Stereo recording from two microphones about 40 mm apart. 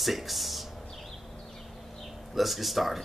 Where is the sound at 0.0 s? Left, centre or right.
Centre.